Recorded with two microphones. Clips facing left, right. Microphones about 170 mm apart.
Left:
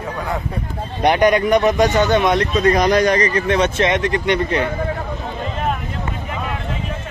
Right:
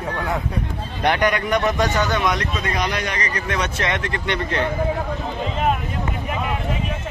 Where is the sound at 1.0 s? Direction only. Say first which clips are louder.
Left 6 dB; 20° left (ahead or behind).